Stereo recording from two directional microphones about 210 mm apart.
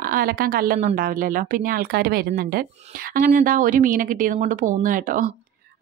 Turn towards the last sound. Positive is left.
turn(degrees=-40)  # may be behind; listen again after turning